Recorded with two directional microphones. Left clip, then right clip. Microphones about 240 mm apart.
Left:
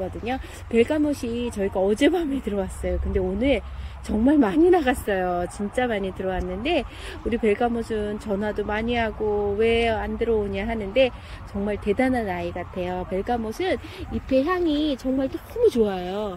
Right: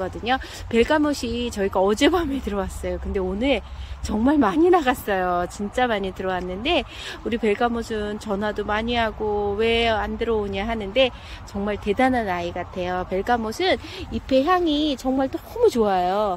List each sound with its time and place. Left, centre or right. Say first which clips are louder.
0.2 s speech: right 6 dB; centre